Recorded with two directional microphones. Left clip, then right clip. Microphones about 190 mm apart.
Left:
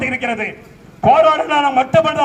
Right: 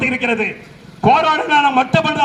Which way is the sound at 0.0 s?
20° left (ahead or behind).